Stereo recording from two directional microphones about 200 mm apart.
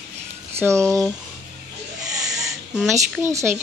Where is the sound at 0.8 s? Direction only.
5° left (ahead or behind).